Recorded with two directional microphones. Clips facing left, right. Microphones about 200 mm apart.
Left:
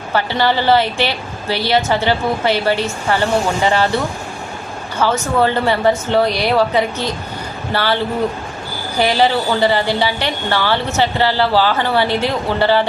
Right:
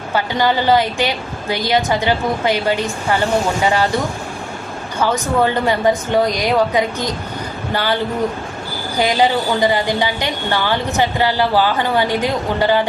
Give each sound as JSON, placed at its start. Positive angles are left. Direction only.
{"t": 0.1, "sound": "a woman's voice", "side_deg": -15}
{"t": 9.0, "sound": "a woman's voice", "side_deg": -15}